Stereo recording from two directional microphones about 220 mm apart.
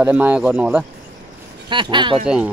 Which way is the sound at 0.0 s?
5° right (ahead or behind).